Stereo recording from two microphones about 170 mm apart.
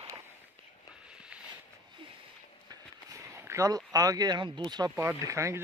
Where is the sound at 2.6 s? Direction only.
15° right (ahead or behind).